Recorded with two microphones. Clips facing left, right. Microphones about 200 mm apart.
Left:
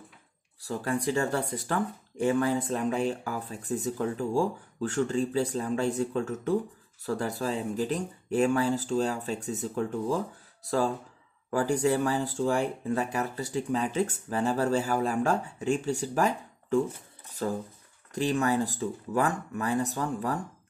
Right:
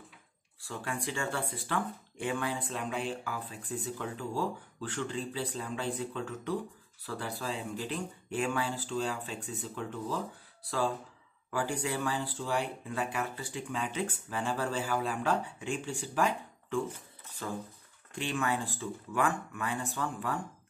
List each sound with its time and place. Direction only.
0.6 s speech: 40° left (ahead or behind)